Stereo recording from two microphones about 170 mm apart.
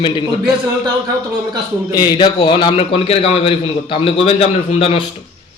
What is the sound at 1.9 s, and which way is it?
A man's voice, 25° left (ahead or behind).